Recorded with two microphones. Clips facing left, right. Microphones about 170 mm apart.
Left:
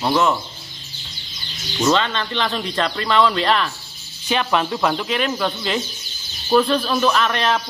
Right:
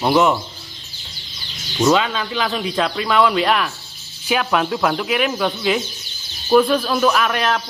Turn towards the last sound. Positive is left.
turn(degrees=-5)  # may be behind; listen again after turning